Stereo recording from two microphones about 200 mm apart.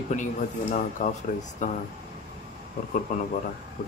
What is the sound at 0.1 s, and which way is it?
Speech, 40° left (ahead or behind).